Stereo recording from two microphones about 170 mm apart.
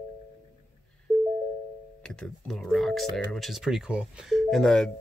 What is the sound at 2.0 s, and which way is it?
Speech, 5° left (ahead or behind).